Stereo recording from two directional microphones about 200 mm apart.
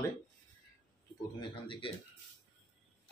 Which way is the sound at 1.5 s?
25° left (ahead or behind).